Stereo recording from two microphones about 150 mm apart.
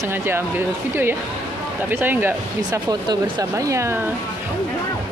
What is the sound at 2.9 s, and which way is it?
Speech, 25° right (ahead or behind).